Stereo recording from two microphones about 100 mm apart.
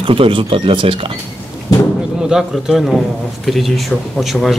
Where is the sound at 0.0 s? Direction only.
65° right (ahead or behind).